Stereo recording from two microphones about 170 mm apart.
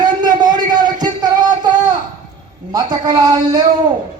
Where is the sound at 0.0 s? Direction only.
25° right (ahead or behind).